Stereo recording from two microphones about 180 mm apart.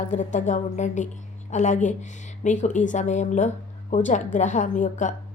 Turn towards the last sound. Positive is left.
turn(degrees=40)  # may be behind; listen again after turning